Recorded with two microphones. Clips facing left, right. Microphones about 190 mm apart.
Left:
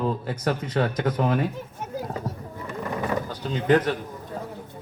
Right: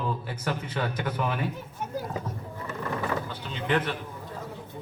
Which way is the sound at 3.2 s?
40° left (ahead or behind).